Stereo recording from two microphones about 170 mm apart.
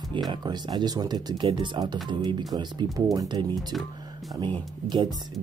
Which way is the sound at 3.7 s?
Centre (ahead or behind).